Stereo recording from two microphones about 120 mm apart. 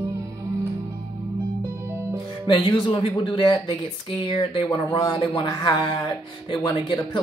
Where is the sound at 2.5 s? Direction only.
45° left (ahead or behind).